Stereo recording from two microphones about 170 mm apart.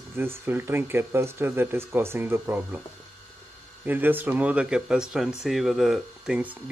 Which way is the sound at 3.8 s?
10° right (ahead or behind).